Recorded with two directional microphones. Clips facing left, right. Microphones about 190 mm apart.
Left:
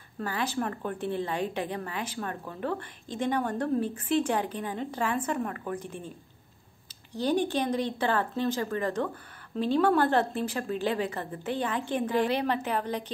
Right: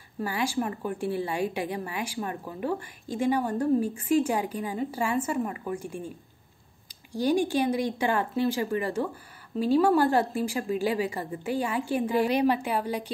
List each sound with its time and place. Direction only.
0.2 s a woman's voice: 10° right (ahead or behind)